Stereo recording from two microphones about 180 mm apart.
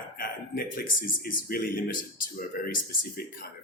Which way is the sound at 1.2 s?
55° left (ahead or behind).